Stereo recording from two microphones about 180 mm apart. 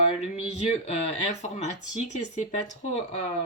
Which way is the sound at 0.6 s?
40° left (ahead or behind).